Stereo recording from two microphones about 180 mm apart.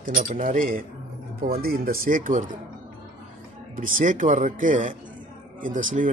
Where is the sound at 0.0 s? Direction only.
45° right (ahead or behind).